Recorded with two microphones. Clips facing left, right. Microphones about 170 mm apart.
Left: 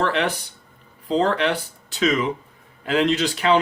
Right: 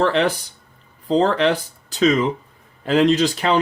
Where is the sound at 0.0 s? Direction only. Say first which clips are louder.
Right 4 dB; 40° right (ahead or behind).